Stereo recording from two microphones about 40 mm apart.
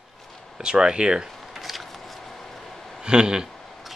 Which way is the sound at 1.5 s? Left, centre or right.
Centre.